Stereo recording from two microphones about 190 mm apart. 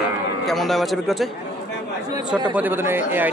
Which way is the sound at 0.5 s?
Centre (ahead or behind).